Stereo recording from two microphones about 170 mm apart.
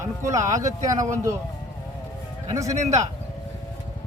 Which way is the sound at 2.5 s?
20° right (ahead or behind).